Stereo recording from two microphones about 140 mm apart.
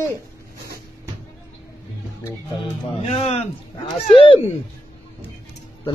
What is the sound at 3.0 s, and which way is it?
Speech, 50° left (ahead or behind).